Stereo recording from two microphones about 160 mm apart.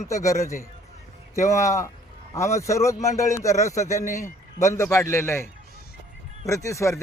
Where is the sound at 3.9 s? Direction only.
50° left (ahead or behind).